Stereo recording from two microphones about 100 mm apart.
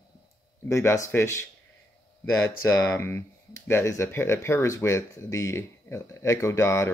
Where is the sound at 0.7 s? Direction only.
30° left (ahead or behind).